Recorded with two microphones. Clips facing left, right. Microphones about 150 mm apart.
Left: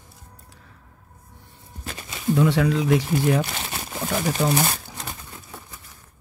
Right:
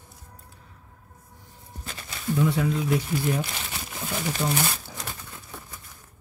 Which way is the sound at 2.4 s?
85° left.